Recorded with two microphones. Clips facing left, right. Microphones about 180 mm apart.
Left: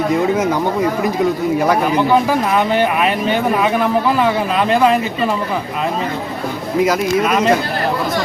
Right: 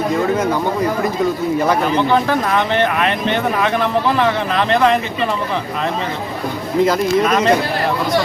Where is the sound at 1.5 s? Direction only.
10° left (ahead or behind).